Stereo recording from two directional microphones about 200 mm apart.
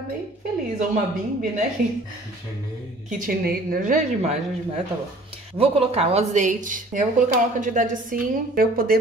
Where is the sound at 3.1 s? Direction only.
45° right (ahead or behind).